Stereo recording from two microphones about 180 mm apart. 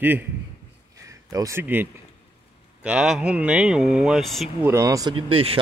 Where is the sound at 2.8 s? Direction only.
5° right (ahead or behind).